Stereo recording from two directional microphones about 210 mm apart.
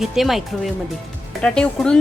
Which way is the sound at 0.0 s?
Centre (ahead or behind).